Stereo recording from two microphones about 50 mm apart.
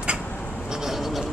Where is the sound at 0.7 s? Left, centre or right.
Centre.